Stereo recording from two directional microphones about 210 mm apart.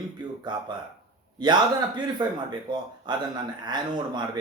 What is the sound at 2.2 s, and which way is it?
A man's voice, 20° right (ahead or behind).